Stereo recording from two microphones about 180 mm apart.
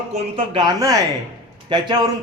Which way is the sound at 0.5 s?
20° right (ahead or behind).